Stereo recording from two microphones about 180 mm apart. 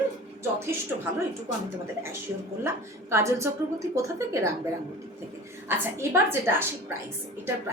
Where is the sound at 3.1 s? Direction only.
15° right (ahead or behind).